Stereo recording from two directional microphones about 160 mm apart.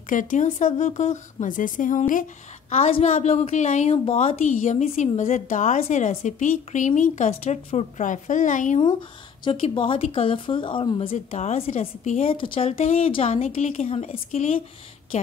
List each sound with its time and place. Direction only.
0.1 s a woman's voice: 55° left (ahead or behind)
9.4 s speech: 35° left (ahead or behind)